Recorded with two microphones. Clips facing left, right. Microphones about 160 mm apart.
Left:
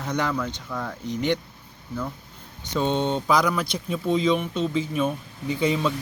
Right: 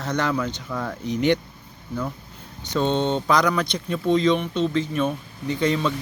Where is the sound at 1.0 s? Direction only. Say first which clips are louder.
Right 4 dB; 70° right (ahead or behind).